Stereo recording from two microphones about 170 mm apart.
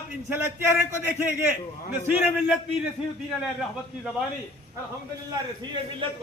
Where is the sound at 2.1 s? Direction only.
5° right (ahead or behind).